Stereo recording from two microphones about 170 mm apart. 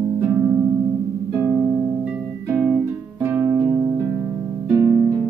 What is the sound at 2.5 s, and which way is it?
Music, centre (ahead or behind).